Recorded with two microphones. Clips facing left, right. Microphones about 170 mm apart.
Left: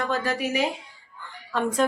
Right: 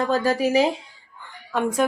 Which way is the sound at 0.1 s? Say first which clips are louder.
Right 6 dB; 35° right (ahead or behind).